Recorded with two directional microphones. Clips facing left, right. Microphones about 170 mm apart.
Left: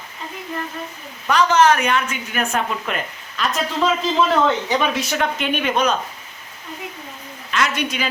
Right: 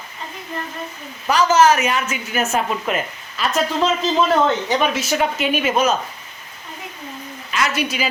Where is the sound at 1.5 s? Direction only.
5° right (ahead or behind).